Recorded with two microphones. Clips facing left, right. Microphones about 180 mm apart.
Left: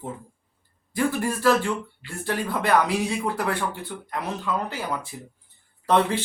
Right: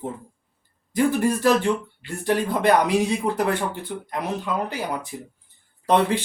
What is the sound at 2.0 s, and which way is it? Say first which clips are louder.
Speech: right 5 dB; 20° right (ahead or behind).